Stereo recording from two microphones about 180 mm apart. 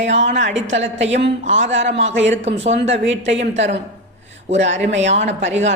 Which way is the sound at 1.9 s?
90° right.